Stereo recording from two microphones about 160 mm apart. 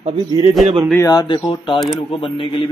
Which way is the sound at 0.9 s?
25° left (ahead or behind).